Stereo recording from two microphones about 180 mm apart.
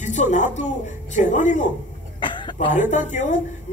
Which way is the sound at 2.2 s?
25° left (ahead or behind).